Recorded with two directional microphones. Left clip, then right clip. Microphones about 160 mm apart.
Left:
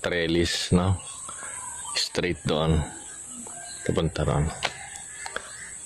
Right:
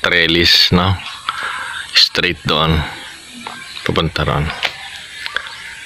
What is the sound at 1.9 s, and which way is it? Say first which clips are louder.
Speech: right 14 dB; 20° left (ahead or behind).